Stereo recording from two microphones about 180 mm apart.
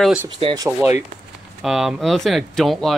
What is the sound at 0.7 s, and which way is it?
Speech, 15° right (ahead or behind).